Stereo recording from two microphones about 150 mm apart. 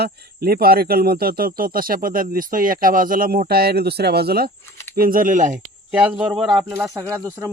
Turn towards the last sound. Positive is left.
turn(degrees=-20)  # may be behind; listen again after turning